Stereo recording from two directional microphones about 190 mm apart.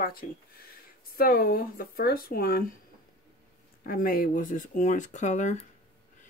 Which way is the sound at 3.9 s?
50° left (ahead or behind).